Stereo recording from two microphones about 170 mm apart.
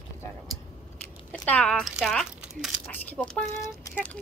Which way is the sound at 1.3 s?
5° left (ahead or behind).